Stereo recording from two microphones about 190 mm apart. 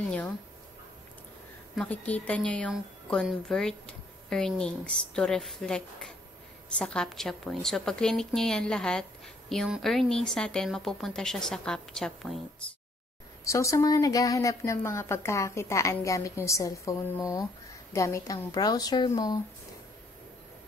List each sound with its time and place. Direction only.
1.8 s a woman's voice: 5° left (ahead or behind)
13.4 s a woman's voice: 15° left (ahead or behind)